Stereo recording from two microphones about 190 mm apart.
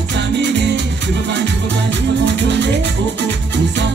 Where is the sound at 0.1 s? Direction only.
65° right (ahead or behind).